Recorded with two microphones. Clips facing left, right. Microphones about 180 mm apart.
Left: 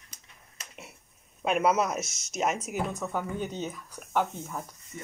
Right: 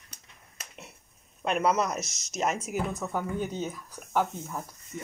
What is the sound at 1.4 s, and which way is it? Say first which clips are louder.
Speech: left 1 dB; 5° left (ahead or behind).